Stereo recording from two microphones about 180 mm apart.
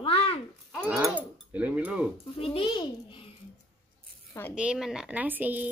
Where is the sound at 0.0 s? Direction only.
30° left (ahead or behind).